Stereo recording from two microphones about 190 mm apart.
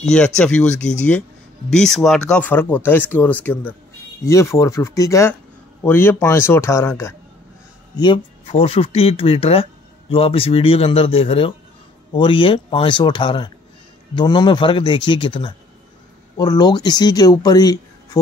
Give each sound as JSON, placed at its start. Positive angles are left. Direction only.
{"t": 0.0, "sound": "speech", "side_deg": 5}
{"t": 8.0, "sound": "speech", "side_deg": 25}